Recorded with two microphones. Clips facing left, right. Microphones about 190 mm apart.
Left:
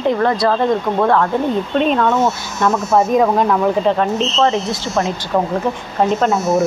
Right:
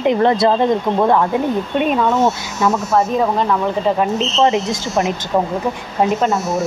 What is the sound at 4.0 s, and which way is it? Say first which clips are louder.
Speech: even; 15° right (ahead or behind).